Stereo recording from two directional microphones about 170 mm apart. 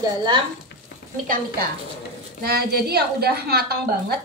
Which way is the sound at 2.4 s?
65° right (ahead or behind).